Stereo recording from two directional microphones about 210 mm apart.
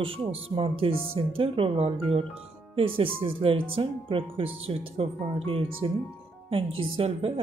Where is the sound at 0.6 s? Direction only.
25° right (ahead or behind).